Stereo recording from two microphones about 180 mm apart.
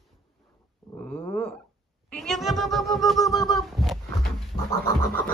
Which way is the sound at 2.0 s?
Centre (ahead or behind).